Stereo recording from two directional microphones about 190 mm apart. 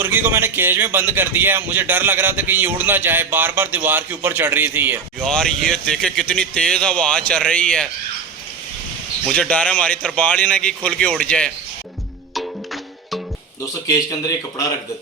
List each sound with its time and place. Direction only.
0.0 s speech: 10° right (ahead or behind)
5.2 s speech: 5° left (ahead or behind)
9.3 s speech: 5° left (ahead or behind)
13.8 s speech: 20° left (ahead or behind)